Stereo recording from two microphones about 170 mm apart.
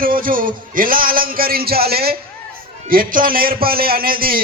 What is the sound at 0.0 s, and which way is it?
A man's voice, 55° right (ahead or behind).